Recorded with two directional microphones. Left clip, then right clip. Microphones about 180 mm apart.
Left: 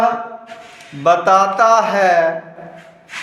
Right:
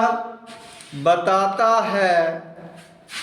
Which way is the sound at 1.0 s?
20° right (ahead or behind).